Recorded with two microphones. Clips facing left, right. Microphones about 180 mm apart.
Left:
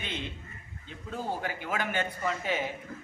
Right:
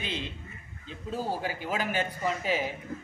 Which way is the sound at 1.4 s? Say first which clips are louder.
Right 1 dB; 30° right (ahead or behind).